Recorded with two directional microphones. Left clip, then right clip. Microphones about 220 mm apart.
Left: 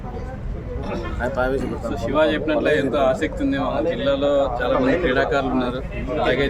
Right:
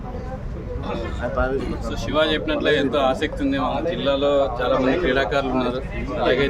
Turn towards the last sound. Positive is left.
turn(degrees=-15)  # may be behind; listen again after turning